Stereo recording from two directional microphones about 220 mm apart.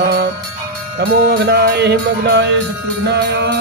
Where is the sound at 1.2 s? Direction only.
45° right (ahead or behind).